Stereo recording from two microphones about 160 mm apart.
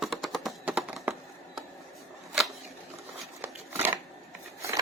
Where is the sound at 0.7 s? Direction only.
5° right (ahead or behind).